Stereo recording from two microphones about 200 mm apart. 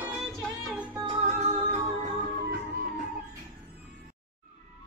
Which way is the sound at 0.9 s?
25° right (ahead or behind).